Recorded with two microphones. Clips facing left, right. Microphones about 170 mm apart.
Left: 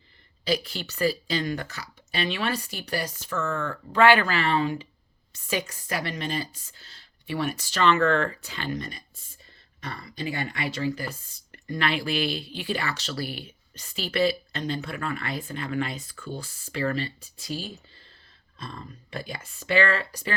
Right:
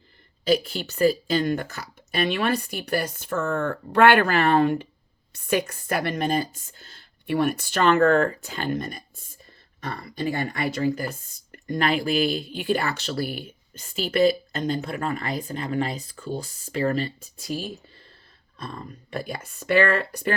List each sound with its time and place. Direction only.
0.4 s speech: 45° right (ahead or behind)